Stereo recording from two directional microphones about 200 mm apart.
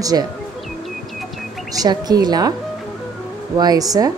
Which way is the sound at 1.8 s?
20° right (ahead or behind).